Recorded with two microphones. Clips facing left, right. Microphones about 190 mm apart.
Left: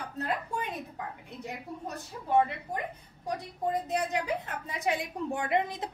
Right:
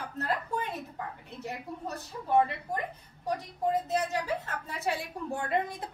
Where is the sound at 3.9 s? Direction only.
15° left (ahead or behind).